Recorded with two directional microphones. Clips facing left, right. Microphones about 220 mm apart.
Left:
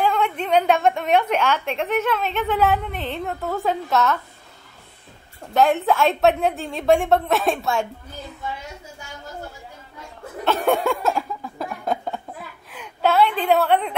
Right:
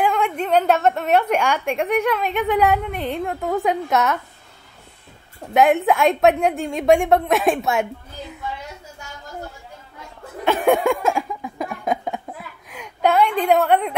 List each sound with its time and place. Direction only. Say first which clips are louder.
0.0 s a woman's voice: right 1 dB; 10° right (ahead or behind)
5.8 s a woman's voice: right 2 dB; 15° right (ahead or behind)
10.4 s a sound: right 3 dB; 15° right (ahead or behind)
13.5 s a woman's voice: right 2 dB; 10° right (ahead or behind)